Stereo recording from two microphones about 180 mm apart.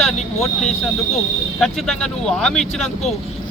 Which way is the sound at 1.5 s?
5° left (ahead or behind).